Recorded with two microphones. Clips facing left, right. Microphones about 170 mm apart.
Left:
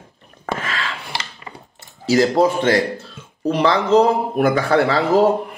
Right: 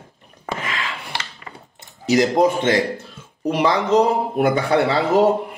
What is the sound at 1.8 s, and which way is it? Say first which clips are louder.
Speech: left 1 dB; 20° right (ahead or behind).